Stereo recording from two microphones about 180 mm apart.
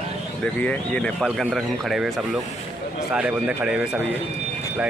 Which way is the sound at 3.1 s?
5° right (ahead or behind).